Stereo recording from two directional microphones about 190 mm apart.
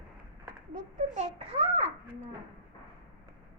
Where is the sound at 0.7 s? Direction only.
40° right (ahead or behind).